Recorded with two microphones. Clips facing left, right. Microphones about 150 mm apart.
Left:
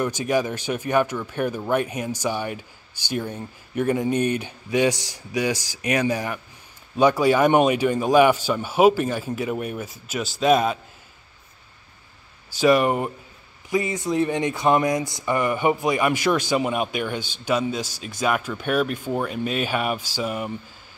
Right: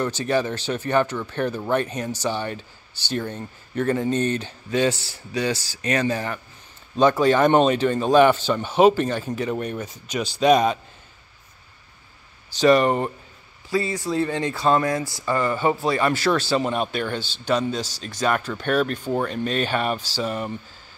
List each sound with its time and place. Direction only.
0.0 s speech: 10° left (ahead or behind)
12.4 s speech: 10° left (ahead or behind)
13.7 s speech: 20° left (ahead or behind)